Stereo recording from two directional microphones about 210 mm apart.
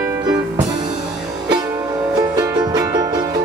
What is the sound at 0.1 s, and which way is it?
Music, 15° right (ahead or behind).